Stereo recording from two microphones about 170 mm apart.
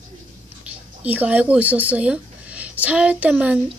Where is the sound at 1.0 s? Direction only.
10° right (ahead or behind).